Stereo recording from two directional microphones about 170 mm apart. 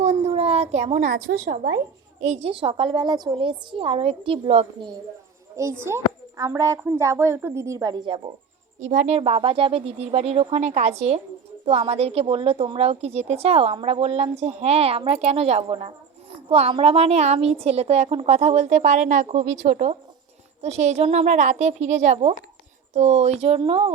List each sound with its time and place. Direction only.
0.0 s a sound: 40° right (ahead or behind)
1.5 s speech: 55° right (ahead or behind)
2.2 s a woman's voice: 40° right (ahead or behind)
5.6 s a woman's voice: 15° right (ahead or behind)
8.8 s a woman's voice: 45° right (ahead or behind)